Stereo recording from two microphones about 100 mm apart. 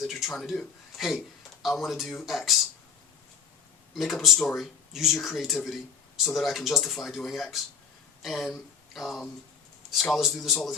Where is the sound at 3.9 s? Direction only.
Centre (ahead or behind).